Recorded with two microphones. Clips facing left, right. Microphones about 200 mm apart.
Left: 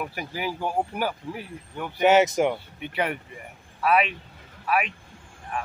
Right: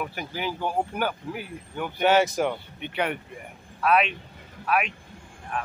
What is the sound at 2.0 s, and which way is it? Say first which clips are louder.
Speech: left 3 dB; 20° left (ahead or behind).